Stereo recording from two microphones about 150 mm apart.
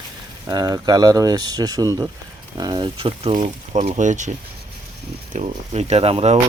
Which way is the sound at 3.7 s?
50° right (ahead or behind).